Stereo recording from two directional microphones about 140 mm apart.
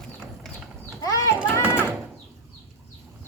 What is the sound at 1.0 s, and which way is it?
Children playing, 25° left (ahead or behind).